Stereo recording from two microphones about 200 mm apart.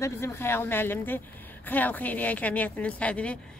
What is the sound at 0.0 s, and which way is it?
A woman's voice, 15° left (ahead or behind).